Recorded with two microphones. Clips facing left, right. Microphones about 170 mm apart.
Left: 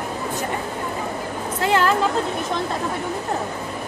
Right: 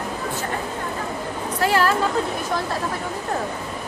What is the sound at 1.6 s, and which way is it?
Speech, 20° left (ahead or behind).